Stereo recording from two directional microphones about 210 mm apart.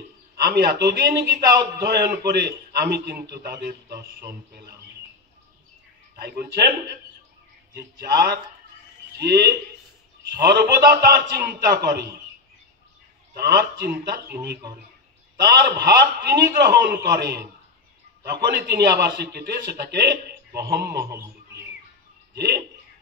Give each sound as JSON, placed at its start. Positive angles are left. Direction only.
{"t": 0.4, "sound": "a man's voice", "side_deg": -50}
{"t": 6.1, "sound": "a man's voice", "side_deg": -50}
{"t": 13.3, "sound": "a man's voice", "side_deg": -50}
{"t": 22.3, "sound": "speech", "side_deg": -50}